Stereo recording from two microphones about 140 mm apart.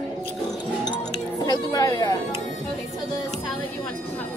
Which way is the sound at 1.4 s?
25° left (ahead or behind).